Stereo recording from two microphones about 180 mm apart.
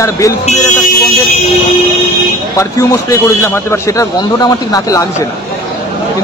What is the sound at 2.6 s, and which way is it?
A man's voice, 15° left (ahead or behind).